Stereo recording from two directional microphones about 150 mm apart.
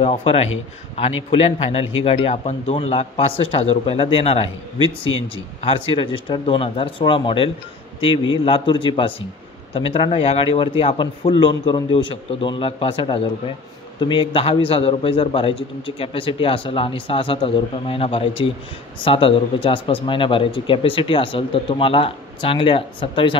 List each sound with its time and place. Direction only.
0.0 s a man's voice: 40° left (ahead or behind)